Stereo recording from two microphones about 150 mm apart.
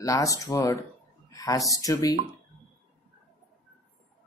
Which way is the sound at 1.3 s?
25° left (ahead or behind).